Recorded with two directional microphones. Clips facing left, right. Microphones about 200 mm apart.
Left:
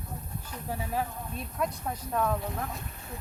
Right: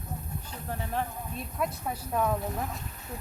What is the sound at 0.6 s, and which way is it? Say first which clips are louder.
Speech: left 1 dB; 10° left (ahead or behind).